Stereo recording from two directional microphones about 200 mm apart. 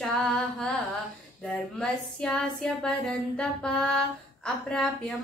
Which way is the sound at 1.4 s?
5° left (ahead or behind).